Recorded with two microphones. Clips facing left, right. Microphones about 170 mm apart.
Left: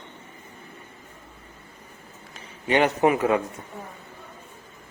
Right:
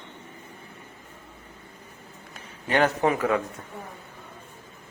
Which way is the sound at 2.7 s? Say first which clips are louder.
Left 2 dB; 15° left (ahead or behind).